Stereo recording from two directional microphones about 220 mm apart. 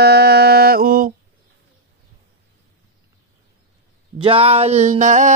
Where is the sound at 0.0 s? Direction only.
45° right (ahead or behind).